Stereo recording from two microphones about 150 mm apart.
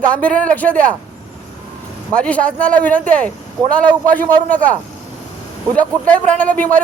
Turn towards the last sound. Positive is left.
turn(degrees=10)  # may be behind; listen again after turning